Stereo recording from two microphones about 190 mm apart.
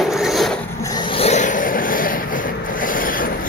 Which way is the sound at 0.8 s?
20° left (ahead or behind).